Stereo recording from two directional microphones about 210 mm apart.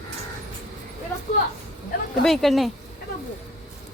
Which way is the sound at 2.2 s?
Centre (ahead or behind).